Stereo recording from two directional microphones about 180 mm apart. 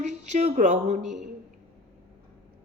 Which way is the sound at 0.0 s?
40° right (ahead or behind).